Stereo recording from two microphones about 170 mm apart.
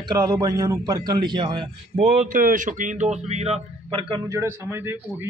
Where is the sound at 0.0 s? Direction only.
20° right (ahead or behind).